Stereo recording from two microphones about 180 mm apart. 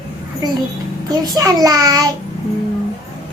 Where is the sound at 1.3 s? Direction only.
20° right (ahead or behind).